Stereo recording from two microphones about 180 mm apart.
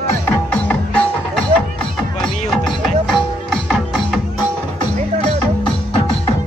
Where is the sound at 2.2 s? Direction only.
Centre (ahead or behind).